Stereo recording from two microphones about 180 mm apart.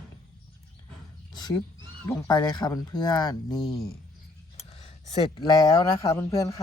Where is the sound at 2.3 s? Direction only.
20° left (ahead or behind).